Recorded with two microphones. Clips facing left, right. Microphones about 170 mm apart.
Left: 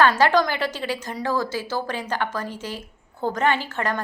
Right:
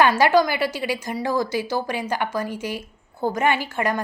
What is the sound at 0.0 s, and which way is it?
A woman's voice, 10° right (ahead or behind).